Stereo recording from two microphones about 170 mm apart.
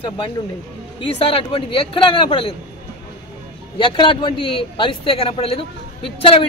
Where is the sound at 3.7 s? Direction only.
30° left (ahead or behind).